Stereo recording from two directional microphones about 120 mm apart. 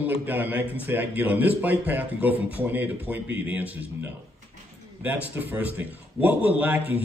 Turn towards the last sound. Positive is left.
turn(degrees=-15)  # may be behind; listen again after turning